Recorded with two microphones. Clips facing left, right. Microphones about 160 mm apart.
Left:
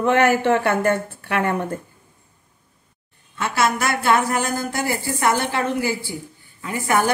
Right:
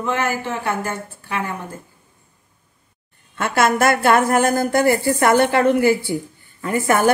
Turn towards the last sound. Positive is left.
turn(degrees=-50)  # may be behind; listen again after turning